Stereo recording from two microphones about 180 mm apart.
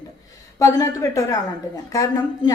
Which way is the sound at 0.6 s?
20° left (ahead or behind).